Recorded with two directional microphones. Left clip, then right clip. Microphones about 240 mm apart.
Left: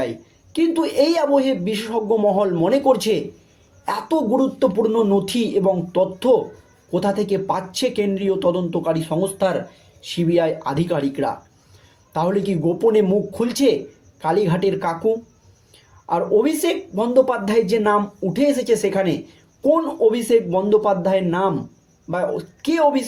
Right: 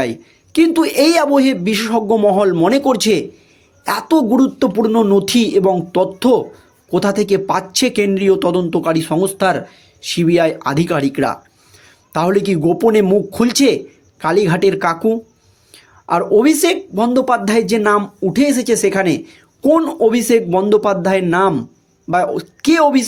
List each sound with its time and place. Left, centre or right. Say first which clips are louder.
0.0 s speech: right 5 dB; right
3.8 s a sound: right 6 dB; right
6.9 s speech: right 5 dB; right